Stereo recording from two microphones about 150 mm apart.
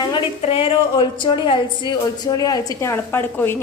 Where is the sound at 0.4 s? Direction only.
40° left (ahead or behind).